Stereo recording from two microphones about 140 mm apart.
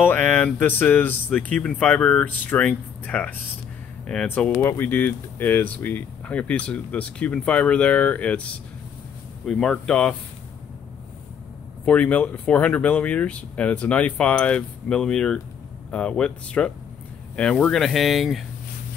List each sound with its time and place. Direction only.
0.0 s speech: 10° left (ahead or behind)
9.5 s speech: 5° left (ahead or behind)
11.8 s speech: 10° left (ahead or behind)